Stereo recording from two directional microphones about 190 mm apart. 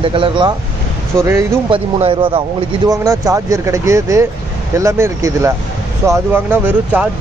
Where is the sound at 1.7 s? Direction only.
30° right (ahead or behind).